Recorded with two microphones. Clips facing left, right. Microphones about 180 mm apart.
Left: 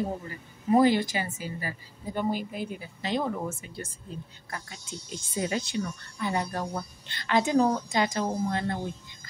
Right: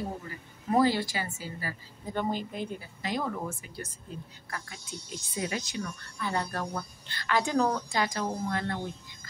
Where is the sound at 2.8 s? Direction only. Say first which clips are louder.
Left 3 dB; 25° left (ahead or behind).